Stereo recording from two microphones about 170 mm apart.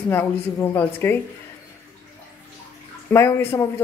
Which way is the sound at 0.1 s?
15° left (ahead or behind).